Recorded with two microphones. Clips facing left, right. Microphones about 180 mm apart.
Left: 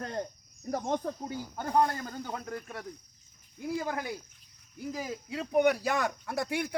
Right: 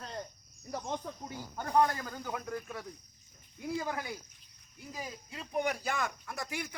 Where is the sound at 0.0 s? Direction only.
60° left (ahead or behind).